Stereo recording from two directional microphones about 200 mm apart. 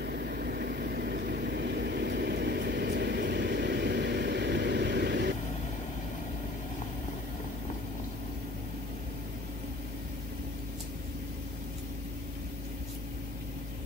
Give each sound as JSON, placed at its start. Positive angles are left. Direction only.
{"t": 0.0, "sound": "vehicle", "side_deg": -50}